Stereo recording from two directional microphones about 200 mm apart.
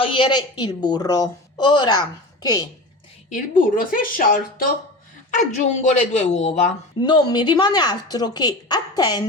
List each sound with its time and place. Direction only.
0.0 s a woman's voice: 25° left (ahead or behind)
3.2 s speech: 40° left (ahead or behind)
7.0 s a woman's voice: 20° left (ahead or behind)